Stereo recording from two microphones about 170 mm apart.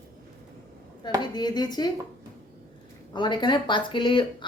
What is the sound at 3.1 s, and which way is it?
A man's voice, 25° left (ahead or behind).